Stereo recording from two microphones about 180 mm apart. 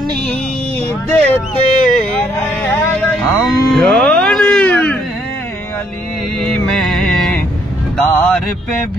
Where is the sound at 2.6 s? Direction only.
10° left (ahead or behind).